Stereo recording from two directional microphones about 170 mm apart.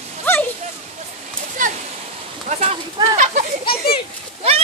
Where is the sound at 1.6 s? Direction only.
50° right (ahead or behind).